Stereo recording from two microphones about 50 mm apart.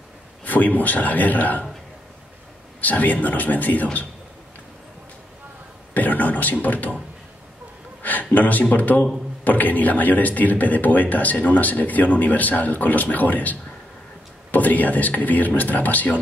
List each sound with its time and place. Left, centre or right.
0.5 s speech: left
2.8 s speech: left
5.9 s a man's voice: left
8.0 s speech: left